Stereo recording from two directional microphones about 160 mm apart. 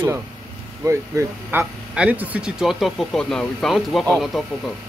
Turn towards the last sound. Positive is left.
turn(degrees=0)  # may be behind; listen again after turning